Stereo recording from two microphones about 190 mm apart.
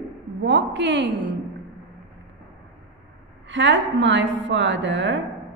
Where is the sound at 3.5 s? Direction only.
75° right (ahead or behind).